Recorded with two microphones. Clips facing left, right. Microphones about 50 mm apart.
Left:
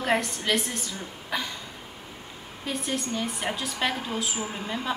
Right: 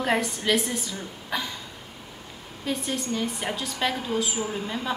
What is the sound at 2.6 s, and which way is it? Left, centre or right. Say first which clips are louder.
A woman's voice: right 1 dB; centre.